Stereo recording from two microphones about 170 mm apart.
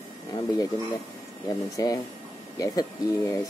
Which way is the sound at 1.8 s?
20° left (ahead or behind).